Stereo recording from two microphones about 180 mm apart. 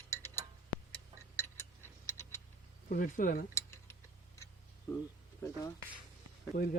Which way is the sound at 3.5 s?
15° left (ahead or behind).